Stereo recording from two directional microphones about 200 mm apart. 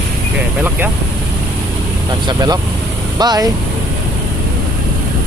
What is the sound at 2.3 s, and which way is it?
Speech, 20° right (ahead or behind).